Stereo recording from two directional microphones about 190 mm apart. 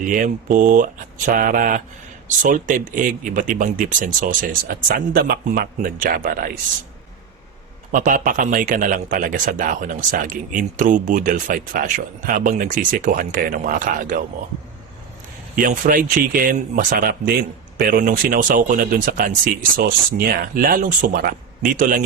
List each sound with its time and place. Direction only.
0.0 s speech: 45° right (ahead or behind)
7.9 s speech: 45° right (ahead or behind)
15.5 s speech: 45° right (ahead or behind)